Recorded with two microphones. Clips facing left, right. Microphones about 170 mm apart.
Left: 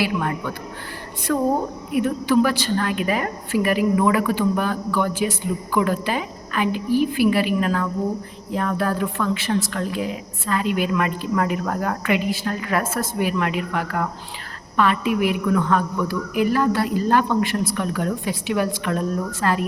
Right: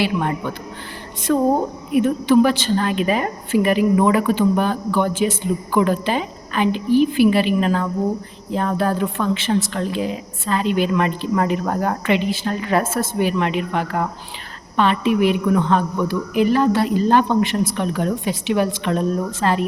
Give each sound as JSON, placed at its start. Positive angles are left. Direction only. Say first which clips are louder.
{"t": 0.0, "sound": "a woman's voice", "louder": "right 2 dB", "side_deg": -25}